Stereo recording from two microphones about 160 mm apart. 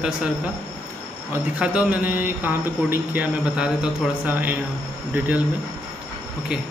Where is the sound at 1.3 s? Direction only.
5° right (ahead or behind).